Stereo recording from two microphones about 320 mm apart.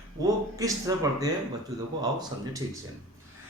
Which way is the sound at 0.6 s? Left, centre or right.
Centre.